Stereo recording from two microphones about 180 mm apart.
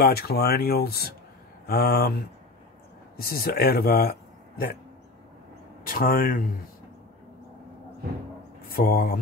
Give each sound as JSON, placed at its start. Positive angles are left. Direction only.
{"t": 0.0, "sound": "speech", "side_deg": 60}
{"t": 3.2, "sound": "speech", "side_deg": 55}
{"t": 5.9, "sound": "speech", "side_deg": 55}
{"t": 8.7, "sound": "speech", "side_deg": 55}